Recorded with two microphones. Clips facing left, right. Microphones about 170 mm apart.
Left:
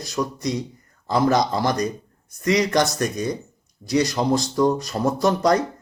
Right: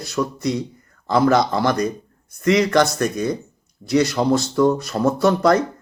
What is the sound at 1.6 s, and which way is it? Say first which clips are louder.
Speech: right 3 dB; 20° left (ahead or behind).